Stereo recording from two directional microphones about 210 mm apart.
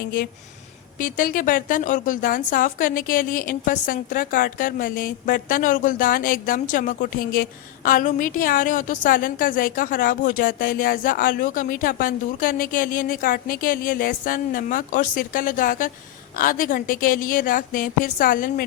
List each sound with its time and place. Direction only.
0.9 s a woman's voice: 40° left (ahead or behind)